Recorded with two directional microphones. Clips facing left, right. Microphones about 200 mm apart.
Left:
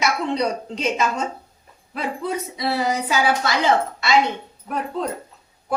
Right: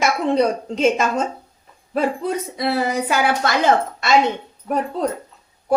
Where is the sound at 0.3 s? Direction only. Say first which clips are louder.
Right 5 dB; 50° right (ahead or behind).